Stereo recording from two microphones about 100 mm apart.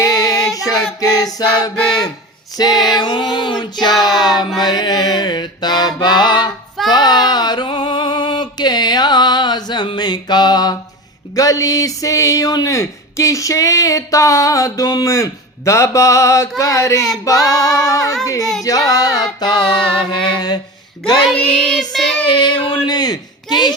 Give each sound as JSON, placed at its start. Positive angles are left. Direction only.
{"t": 0.0, "sound": "child singing", "side_deg": 35}
{"t": 2.6, "sound": "speech", "side_deg": 40}
{"t": 2.9, "sound": "a sound", "side_deg": 45}
{"t": 4.6, "sound": "mantra", "side_deg": 45}
{"t": 6.9, "sound": "a sound", "side_deg": 45}
{"t": 11.3, "sound": "speech", "side_deg": 35}
{"t": 18.3, "sound": "singing", "side_deg": 35}
{"t": 18.9, "sound": "music", "side_deg": 35}
{"t": 20.0, "sound": "mantra", "side_deg": 55}
{"t": 21.5, "sound": "child singing", "side_deg": 5}
{"t": 22.3, "sound": "child singing", "side_deg": 50}
{"t": 22.9, "sound": "speech", "side_deg": 45}